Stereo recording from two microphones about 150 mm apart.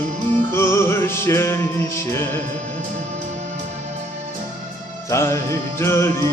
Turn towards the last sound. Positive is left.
turn(degrees=15)  # may be behind; listen again after turning